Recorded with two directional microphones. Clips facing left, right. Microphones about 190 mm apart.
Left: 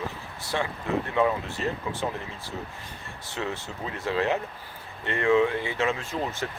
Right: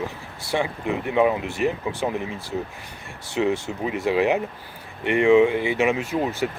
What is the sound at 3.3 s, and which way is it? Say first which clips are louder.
Speech: right 10 dB; 15° right (ahead or behind).